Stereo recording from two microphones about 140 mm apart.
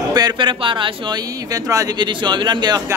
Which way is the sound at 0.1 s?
30° right (ahead or behind).